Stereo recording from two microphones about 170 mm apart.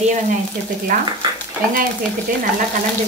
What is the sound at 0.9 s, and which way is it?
Speech, 55° right (ahead or behind).